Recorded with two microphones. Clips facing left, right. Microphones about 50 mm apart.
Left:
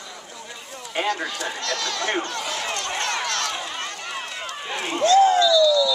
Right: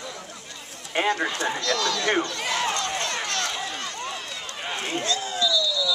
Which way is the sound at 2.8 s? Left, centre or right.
Left.